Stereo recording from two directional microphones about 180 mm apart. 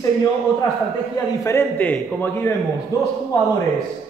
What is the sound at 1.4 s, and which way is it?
A man's voice, 15° left (ahead or behind).